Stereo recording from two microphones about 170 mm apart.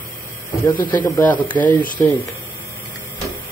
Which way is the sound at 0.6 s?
10° left (ahead or behind).